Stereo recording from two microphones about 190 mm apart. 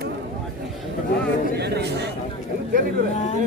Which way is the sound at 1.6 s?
60° right (ahead or behind).